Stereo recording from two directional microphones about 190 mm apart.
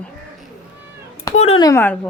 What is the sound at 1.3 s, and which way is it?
Speech, 30° left (ahead or behind).